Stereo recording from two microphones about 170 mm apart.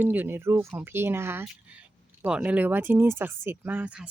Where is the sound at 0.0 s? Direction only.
10° right (ahead or behind).